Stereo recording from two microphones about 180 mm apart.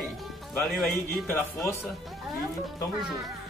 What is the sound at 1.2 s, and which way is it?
Speech, 15° left (ahead or behind).